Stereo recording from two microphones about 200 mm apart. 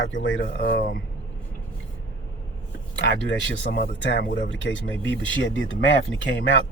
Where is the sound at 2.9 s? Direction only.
60° left (ahead or behind).